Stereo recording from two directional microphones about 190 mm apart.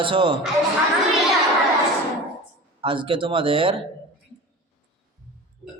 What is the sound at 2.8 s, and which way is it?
A man's voice, 25° right (ahead or behind).